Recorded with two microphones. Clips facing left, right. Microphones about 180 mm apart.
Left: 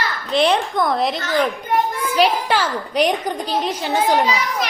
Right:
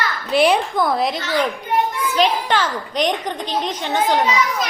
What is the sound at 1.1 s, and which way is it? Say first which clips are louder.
Speech: left 1 dB; 45° left (ahead or behind).